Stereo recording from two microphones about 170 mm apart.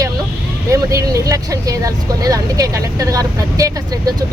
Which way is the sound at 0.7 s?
20° right (ahead or behind).